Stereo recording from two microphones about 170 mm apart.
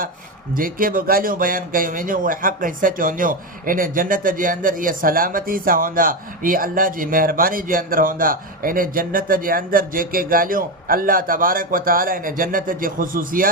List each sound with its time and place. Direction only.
0.5 s speech: 55° right (ahead or behind)